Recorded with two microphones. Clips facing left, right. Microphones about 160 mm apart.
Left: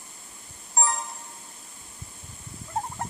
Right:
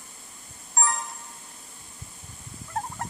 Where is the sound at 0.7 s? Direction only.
25° left (ahead or behind).